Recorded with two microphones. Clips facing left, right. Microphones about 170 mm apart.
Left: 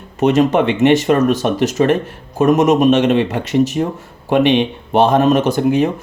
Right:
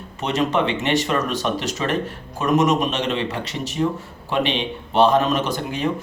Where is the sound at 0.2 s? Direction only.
50° left (ahead or behind).